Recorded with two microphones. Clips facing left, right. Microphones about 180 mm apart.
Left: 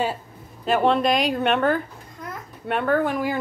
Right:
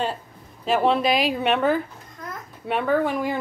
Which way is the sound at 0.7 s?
Centre (ahead or behind).